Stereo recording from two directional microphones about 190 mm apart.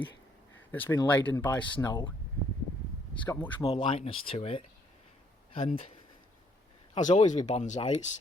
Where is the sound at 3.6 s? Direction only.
25° left (ahead or behind).